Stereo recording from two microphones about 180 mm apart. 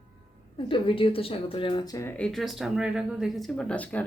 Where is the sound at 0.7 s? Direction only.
30° left (ahead or behind).